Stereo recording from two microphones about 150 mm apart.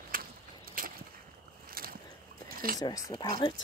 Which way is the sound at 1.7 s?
75° right (ahead or behind).